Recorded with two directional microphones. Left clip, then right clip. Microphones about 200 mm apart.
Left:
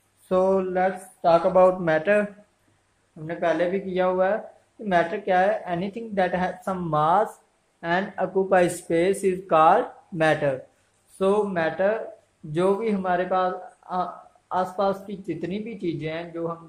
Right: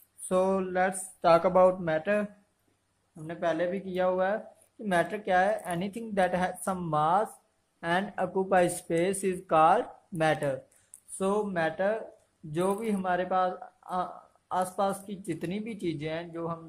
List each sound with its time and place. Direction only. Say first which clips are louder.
0.3 s speech: left 6 dB; 15° right (ahead or behind)
1.2 s speech: left 4 dB; 30° right (ahead or behind)
1.9 s speech: left 7 dB; 5° right (ahead or behind)
3.3 s speech: left 6 dB; 10° right (ahead or behind)